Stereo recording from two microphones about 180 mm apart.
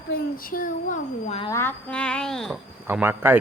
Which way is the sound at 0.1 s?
50° left (ahead or behind).